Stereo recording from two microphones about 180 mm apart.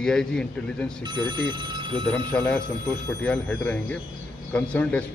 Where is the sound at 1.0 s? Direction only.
25° right (ahead or behind).